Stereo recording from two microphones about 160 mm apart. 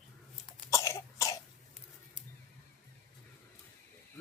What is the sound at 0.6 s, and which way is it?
Cough, 20° left (ahead or behind).